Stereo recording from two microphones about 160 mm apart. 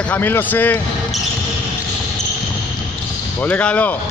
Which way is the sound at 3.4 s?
10° left (ahead or behind).